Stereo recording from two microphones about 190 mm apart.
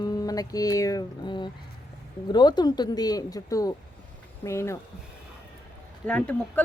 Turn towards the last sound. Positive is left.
turn(degrees=5)  # may be behind; listen again after turning